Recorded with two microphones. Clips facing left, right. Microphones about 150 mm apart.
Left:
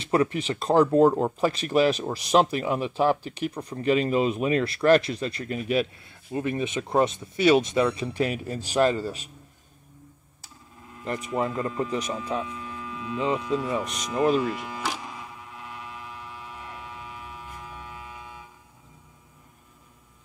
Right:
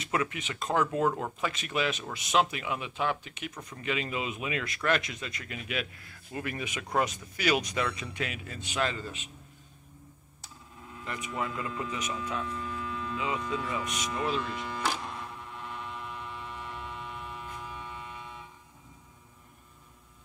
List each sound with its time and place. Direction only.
0.0 s speech: 35° left (ahead or behind)
11.1 s speech: 35° left (ahead or behind)
12.4 s hum: 5° left (ahead or behind)
13.7 s speech: 30° left (ahead or behind)
13.9 s speech: 5° right (ahead or behind)
14.2 s speech: 45° left (ahead or behind)
14.5 s a sound: 5° left (ahead or behind)